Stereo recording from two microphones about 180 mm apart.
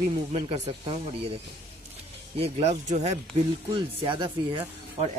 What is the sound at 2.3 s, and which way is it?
Speech, 35° right (ahead or behind).